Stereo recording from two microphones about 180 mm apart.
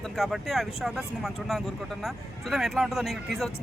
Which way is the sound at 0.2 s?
Centre (ahead or behind).